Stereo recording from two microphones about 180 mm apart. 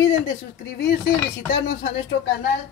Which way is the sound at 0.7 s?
60° left (ahead or behind).